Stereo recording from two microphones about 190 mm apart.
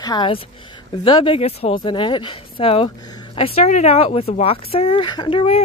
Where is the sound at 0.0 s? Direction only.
25° left (ahead or behind).